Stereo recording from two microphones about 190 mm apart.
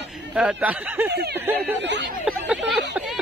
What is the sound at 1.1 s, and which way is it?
Speech, 60° right (ahead or behind).